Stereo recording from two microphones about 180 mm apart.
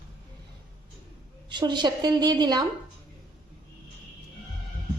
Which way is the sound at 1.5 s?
25° right (ahead or behind).